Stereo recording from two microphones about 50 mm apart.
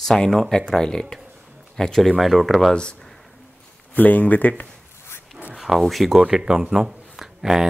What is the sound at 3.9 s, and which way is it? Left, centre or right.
Speech, left.